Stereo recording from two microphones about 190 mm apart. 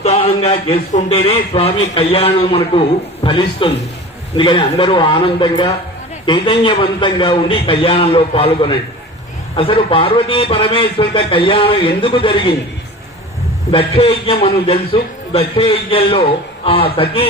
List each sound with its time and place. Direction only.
0.0 s a man's voice: 35° left (ahead or behind)
13.7 s speech: 30° left (ahead or behind)